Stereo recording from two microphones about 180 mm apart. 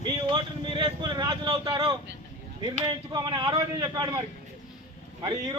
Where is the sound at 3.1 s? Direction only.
25° right (ahead or behind).